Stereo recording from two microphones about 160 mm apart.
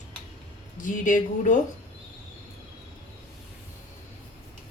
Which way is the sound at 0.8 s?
55° left (ahead or behind).